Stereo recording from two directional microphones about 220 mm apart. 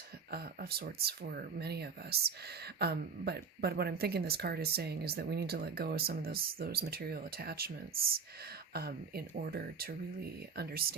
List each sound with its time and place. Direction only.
0.3 s speech: 45° right (ahead or behind)